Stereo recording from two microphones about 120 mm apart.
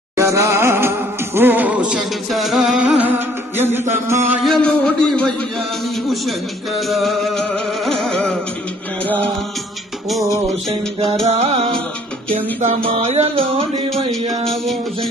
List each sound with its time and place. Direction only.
0.2 s music: 25° right (ahead or behind)
4.4 s a sound: 5° left (ahead or behind)
6.7 s music: centre (ahead or behind)
10.7 s music: 55° right (ahead or behind)
12.8 s music: 60° right (ahead or behind)
14.5 s music: centre (ahead or behind)